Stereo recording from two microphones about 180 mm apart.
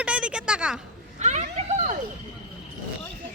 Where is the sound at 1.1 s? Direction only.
40° right (ahead or behind).